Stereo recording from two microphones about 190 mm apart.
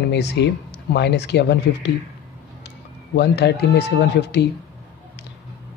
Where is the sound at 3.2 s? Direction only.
65° left (ahead or behind).